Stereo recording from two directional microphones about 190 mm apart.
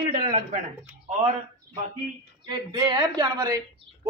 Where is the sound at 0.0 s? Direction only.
30° right (ahead or behind).